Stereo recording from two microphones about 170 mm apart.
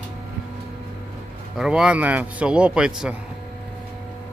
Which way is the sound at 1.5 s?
5° right (ahead or behind).